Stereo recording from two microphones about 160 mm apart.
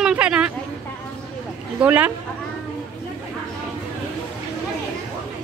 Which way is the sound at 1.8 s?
10° right (ahead or behind).